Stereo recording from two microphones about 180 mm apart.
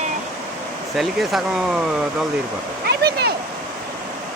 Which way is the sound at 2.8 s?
65° right (ahead or behind).